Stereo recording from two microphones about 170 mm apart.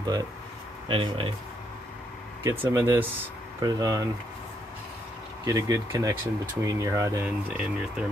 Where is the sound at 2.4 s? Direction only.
15° right (ahead or behind).